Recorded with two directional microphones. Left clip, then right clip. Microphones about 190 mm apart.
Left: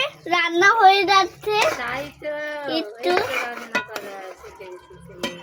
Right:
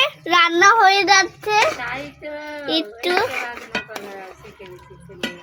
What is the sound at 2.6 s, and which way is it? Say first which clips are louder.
Speech: right 4 dB; 35° right (ahead or behind).